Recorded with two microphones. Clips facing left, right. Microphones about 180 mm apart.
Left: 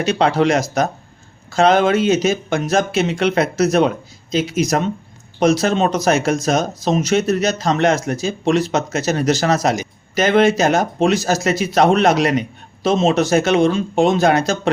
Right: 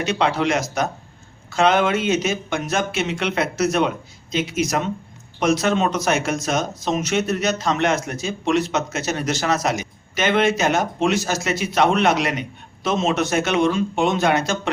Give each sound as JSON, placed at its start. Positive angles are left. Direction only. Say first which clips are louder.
{"t": 0.0, "sound": "speech", "louder": "left 5 dB", "side_deg": 40}